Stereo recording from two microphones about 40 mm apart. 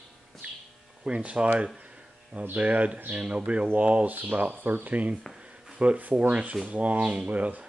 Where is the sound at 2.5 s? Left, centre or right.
Right.